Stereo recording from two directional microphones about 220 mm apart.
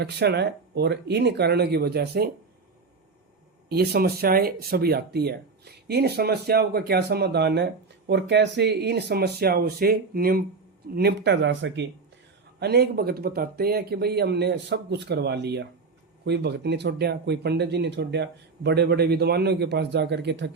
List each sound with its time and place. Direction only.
0.0 s speech: 50° right (ahead or behind)
3.7 s speech: 45° right (ahead or behind)